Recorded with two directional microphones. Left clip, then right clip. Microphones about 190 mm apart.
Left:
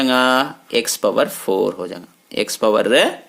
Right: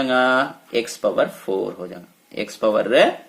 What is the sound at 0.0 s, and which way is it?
Speech, 45° left (ahead or behind).